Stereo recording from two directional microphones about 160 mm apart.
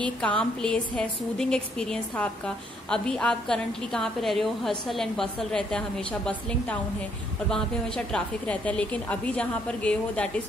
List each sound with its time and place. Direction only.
0.0 s a woman's voice: 5° left (ahead or behind)